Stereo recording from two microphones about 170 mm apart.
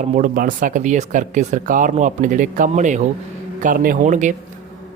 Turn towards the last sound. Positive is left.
turn(degrees=-50)  # may be behind; listen again after turning